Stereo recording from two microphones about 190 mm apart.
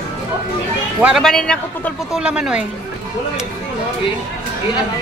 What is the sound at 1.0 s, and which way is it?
A man's voice, centre (ahead or behind).